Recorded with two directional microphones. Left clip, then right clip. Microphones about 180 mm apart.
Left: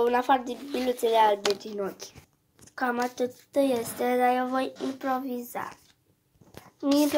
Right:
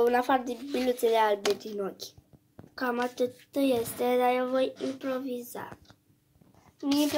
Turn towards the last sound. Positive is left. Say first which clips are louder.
# left 4 dB
turn(degrees=10)  # may be behind; listen again after turning